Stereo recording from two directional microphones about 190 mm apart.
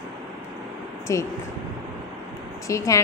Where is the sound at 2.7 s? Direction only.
15° left (ahead or behind).